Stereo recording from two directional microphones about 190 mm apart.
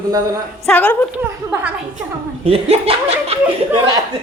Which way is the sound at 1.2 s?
10° right (ahead or behind).